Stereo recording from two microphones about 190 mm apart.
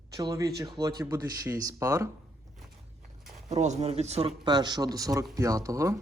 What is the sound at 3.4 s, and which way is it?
Speech, 40° right (ahead or behind).